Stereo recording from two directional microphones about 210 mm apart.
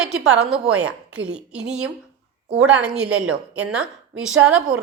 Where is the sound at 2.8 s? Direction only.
5° right (ahead or behind).